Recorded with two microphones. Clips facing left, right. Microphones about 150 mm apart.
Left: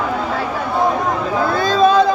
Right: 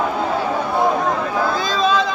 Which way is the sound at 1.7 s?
60° left (ahead or behind).